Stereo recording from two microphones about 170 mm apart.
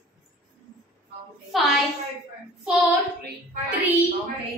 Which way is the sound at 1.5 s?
Centre (ahead or behind).